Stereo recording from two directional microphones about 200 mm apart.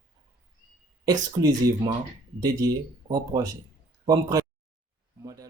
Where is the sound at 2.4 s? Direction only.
20° right (ahead or behind).